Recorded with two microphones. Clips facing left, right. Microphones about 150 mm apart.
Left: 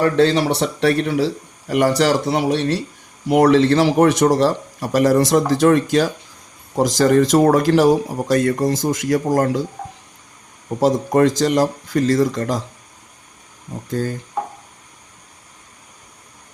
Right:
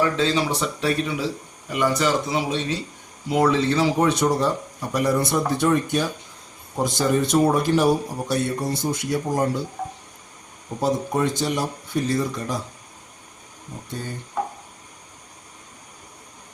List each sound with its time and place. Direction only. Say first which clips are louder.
0.0 s a man's voice: left 6 dB; 65° left (ahead or behind); by 9.6 s 90° left
10.8 s a man's voice: left 7 dB; 90° left